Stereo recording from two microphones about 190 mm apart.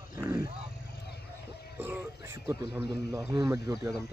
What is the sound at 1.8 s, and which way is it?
Speech, 10° right (ahead or behind).